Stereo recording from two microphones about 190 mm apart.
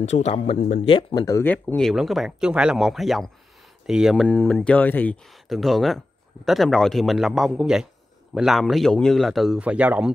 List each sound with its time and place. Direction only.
0.0 s speech: 35° left (ahead or behind)
0.9 s speech: 20° left (ahead or behind); by 10.1 s 5° right (ahead or behind)